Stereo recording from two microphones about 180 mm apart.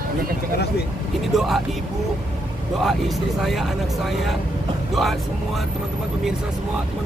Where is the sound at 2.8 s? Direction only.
Centre (ahead or behind).